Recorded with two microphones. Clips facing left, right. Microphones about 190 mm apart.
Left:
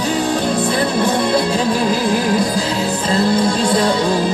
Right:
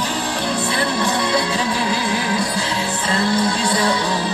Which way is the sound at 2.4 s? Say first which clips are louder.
Left 5 dB; 20° left (ahead or behind).